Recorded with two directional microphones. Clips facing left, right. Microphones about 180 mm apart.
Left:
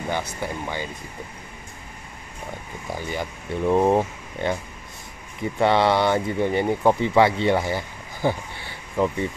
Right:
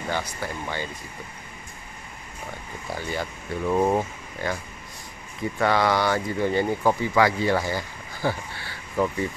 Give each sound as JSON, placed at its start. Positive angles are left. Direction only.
{"t": 0.1, "sound": "speech", "side_deg": 15}
{"t": 2.9, "sound": "speech", "side_deg": 15}